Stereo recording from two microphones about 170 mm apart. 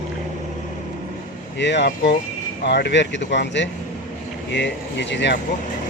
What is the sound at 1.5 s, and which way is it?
Speech, 90° left.